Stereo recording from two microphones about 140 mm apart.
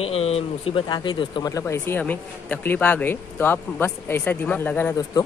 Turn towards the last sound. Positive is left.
turn(degrees=10)  # may be behind; listen again after turning